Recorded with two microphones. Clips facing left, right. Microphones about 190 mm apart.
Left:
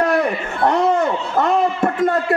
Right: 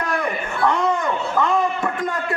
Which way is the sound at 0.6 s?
40° left (ahead or behind).